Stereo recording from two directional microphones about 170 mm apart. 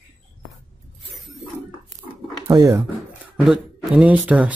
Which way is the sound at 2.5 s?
20° right (ahead or behind).